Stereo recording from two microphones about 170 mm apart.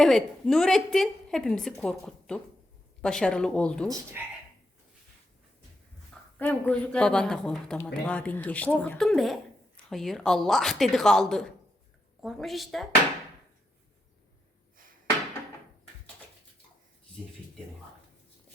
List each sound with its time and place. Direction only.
0.0 s speech: 5° left (ahead or behind)
3.8 s speech: 20° right (ahead or behind)
6.4 s speech: 5° left (ahead or behind)